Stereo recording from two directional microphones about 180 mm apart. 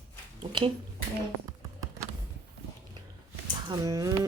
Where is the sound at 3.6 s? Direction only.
20° right (ahead or behind).